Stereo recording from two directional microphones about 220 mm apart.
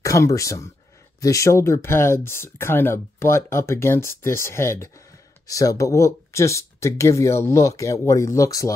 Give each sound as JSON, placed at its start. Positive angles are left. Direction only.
{"t": 0.0, "sound": "speech", "side_deg": 15}